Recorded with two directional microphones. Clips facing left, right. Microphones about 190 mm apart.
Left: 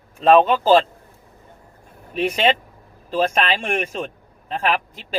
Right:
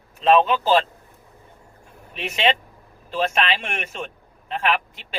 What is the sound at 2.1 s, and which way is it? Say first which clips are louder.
A man's voice: left 4 dB; 45° left (ahead or behind).